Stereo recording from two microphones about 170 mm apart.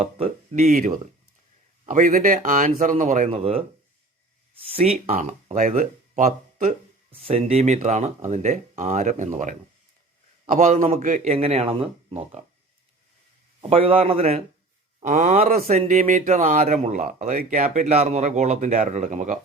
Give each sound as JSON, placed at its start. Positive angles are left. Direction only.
{"t": 0.3, "sound": "speech", "side_deg": -45}
{"t": 3.2, "sound": "a man's voice", "side_deg": -35}
{"t": 5.5, "sound": "speech", "side_deg": -50}
{"t": 7.1, "sound": "a man's voice", "side_deg": -35}
{"t": 13.6, "sound": "a man's voice", "side_deg": -35}
{"t": 15.5, "sound": "speech", "side_deg": -55}